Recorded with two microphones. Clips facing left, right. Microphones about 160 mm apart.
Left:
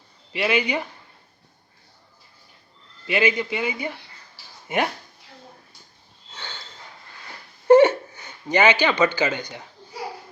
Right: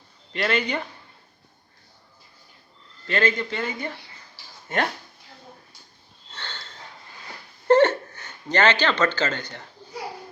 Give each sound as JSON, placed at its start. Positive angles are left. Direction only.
{"t": 0.3, "sound": "speech", "side_deg": 10}
{"t": 3.1, "sound": "speech", "side_deg": 10}
{"t": 6.3, "sound": "a sound", "side_deg": 10}
{"t": 7.7, "sound": "speech", "side_deg": 10}